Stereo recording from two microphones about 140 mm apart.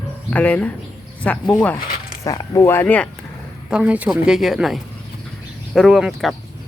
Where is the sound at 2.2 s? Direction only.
25° left (ahead or behind).